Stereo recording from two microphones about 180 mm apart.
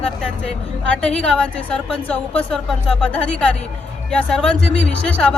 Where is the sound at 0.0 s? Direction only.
5° left (ahead or behind).